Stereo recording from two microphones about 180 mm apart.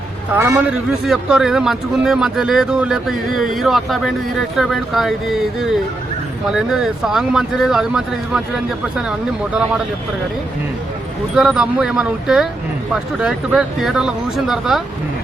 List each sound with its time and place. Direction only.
0.3 s a man's voice: 15° right (ahead or behind)
1.0 s speech: centre (ahead or behind)
11.3 s speech: 5° right (ahead or behind)